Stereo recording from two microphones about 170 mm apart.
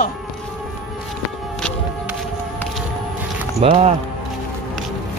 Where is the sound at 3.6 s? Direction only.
40° right (ahead or behind).